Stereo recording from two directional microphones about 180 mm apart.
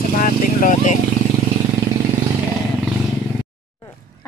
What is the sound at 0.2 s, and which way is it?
Vehicle, 45° left (ahead or behind).